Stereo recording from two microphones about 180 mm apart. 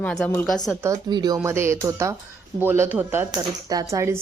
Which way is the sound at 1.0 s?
25° right (ahead or behind).